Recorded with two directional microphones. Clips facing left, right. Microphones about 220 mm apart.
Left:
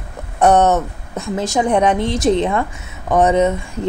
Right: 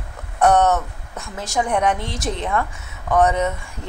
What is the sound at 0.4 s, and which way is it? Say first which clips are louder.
Speech: left 3 dB; 20° left (ahead or behind).